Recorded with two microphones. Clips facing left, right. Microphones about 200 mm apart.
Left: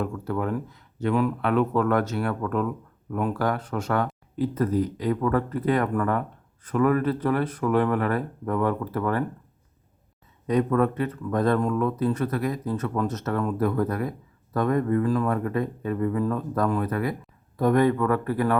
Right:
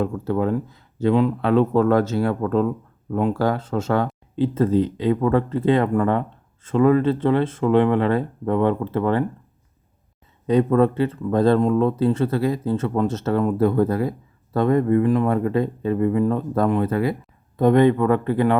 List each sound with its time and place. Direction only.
0.3 s speech: 25° right (ahead or behind)
10.4 s speech: 30° right (ahead or behind)